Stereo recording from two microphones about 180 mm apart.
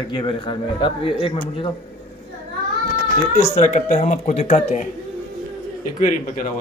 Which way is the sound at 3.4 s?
40° left (ahead or behind).